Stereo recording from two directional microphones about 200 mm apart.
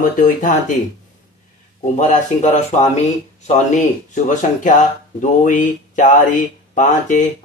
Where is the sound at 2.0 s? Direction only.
35° left (ahead or behind).